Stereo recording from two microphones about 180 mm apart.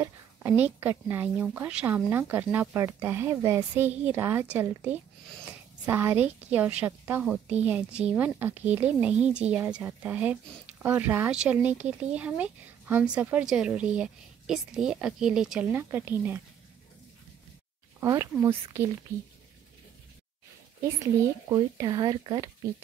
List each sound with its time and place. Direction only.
0.0 s a sound: 10° right (ahead or behind)
0.7 s a woman's voice: 10° right (ahead or behind)
18.0 s a woman's voice: 15° right (ahead or behind)
20.8 s speech: 15° right (ahead or behind)